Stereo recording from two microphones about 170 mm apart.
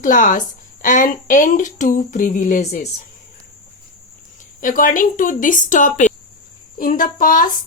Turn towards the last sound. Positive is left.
turn(degrees=50)  # may be behind; listen again after turning